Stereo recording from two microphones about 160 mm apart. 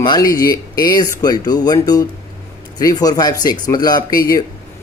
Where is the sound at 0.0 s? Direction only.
25° left (ahead or behind).